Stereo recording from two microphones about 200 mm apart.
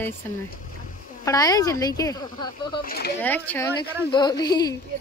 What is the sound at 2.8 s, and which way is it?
Speech, 50° left (ahead or behind).